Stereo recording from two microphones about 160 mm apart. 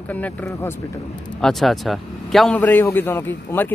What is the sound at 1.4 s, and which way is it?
A man's voice, centre (ahead or behind).